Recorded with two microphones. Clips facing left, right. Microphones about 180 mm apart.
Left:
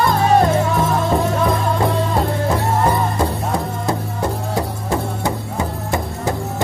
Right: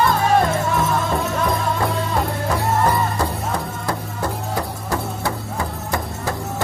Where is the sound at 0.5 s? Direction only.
30° left (ahead or behind).